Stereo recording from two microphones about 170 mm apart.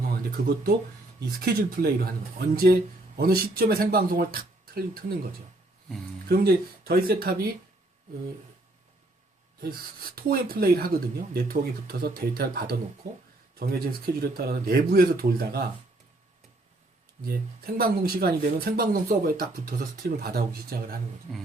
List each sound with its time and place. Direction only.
0.1 s speech: 60° right (ahead or behind)
6.2 s speech: 65° right (ahead or behind)
10.2 s speech: 60° right (ahead or behind)
17.2 s speech: 65° right (ahead or behind)